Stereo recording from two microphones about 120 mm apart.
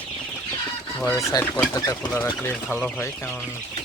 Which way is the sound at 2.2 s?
15° left (ahead or behind).